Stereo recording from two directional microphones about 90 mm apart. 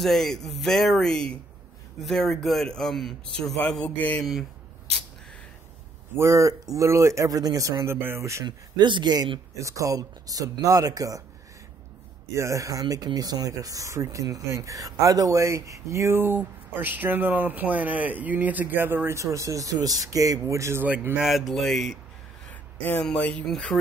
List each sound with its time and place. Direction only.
0.0 s speech: 5° left (ahead or behind)
3.9 s speech: 20° left (ahead or behind)
4.2 s speech: centre (ahead or behind)
6.1 s speech: 35° right (ahead or behind)
8.5 s speech: 60° right (ahead or behind)
9.6 s speech: 35° right (ahead or behind)
12.4 s speech: 35° right (ahead or behind)
20.8 s speech: 20° right (ahead or behind)
21.2 s speech: centre (ahead or behind)
23.1 s speech: 15° left (ahead or behind)